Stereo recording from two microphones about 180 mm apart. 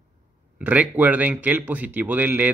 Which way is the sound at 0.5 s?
10° right (ahead or behind).